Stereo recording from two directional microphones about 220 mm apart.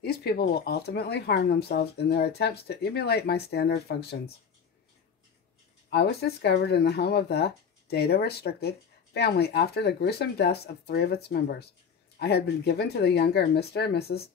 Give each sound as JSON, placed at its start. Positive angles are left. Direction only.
{"t": 0.0, "sound": "speech", "side_deg": 45}
{"t": 5.9, "sound": "speech", "side_deg": 45}